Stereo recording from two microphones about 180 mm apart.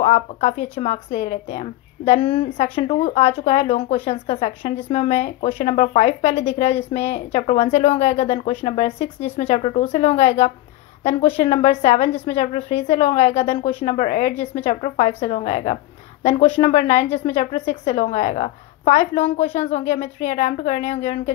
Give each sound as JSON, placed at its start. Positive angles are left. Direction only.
{"t": 0.0, "sound": "speech", "side_deg": 40}